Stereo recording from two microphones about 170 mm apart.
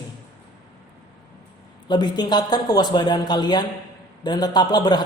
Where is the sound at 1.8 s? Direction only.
25° left (ahead or behind).